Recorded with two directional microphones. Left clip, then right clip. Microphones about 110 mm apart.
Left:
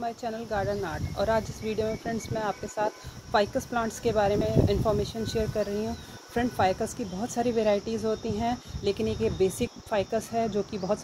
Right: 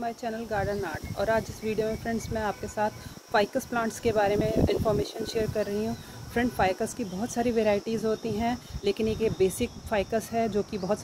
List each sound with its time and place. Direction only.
0.0 s speech: 35° right (ahead or behind)